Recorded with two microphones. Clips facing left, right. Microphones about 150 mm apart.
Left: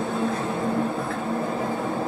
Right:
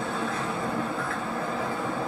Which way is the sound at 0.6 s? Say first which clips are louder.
Left 5 dB; 25° left (ahead or behind).